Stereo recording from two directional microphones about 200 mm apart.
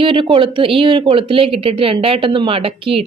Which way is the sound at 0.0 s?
25° right (ahead or behind).